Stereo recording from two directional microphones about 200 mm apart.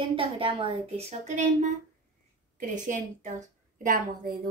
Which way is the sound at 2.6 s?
40° right (ahead or behind).